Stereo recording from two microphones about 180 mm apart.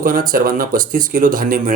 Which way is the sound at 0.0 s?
50° right (ahead or behind).